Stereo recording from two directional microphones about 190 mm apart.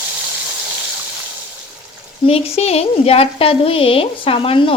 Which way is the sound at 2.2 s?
30° left (ahead or behind).